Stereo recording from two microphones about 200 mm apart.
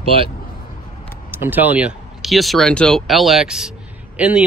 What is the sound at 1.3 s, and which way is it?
Speech, 10° right (ahead or behind).